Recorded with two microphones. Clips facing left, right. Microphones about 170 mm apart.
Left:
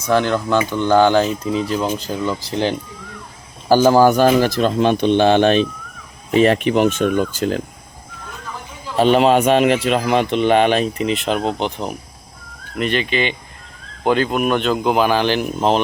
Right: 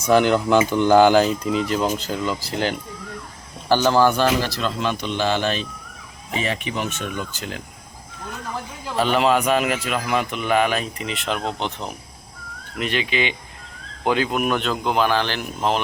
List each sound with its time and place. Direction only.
0.0 s speech: 10° right (ahead or behind)
2.0 s speech: 15° left (ahead or behind)
3.7 s a man's voice: 40° left (ahead or behind)
9.0 s speech: 25° left (ahead or behind)
12.8 s speech: 5° right (ahead or behind); by 15.8 s 20° left (ahead or behind)